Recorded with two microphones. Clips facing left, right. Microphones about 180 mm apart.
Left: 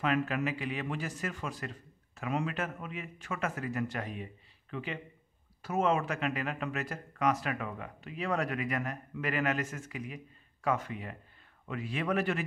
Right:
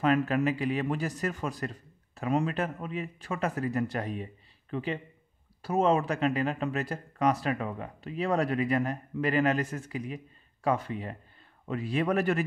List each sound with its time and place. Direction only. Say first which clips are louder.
0.0 s speech: right 5 dB; 40° right (ahead or behind)